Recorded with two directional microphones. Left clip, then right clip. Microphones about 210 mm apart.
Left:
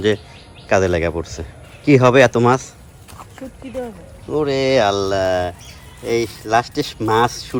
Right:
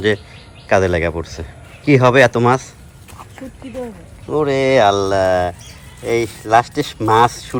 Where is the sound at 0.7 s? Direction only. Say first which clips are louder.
Right 1 dB; 15° left (ahead or behind).